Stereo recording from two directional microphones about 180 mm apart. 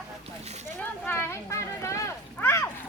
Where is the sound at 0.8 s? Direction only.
10° left (ahead or behind).